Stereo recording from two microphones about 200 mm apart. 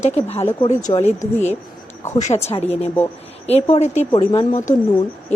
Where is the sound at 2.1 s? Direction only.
35° left (ahead or behind).